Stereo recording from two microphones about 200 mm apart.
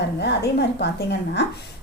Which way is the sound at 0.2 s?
55° left (ahead or behind).